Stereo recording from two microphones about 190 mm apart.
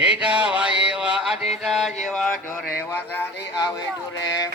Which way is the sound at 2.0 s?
5° left (ahead or behind).